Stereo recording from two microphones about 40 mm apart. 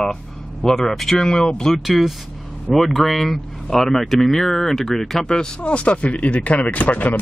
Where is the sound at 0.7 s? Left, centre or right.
Centre.